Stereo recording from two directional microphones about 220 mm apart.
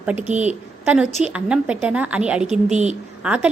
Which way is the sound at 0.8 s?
5° right (ahead or behind).